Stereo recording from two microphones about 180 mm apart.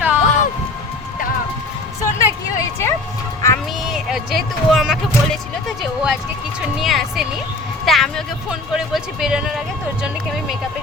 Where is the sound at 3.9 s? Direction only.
Centre (ahead or behind).